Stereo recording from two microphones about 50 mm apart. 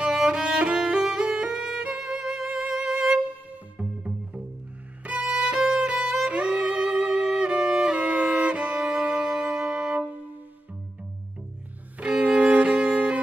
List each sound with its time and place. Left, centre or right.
0.0 s music: centre
0.7 s violin: centre
1.8 s music: centre
5.0 s violin: right
5.3 s music: centre
12.0 s music: right